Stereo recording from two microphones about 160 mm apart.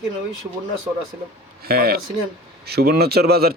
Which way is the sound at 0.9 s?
15° right (ahead or behind).